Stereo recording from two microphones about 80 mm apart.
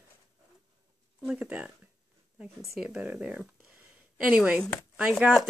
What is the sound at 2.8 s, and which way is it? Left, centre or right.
Speech, centre.